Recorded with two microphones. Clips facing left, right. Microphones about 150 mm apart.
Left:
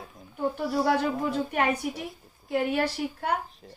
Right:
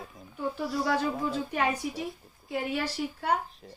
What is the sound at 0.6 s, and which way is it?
A woman's voice, 55° left (ahead or behind).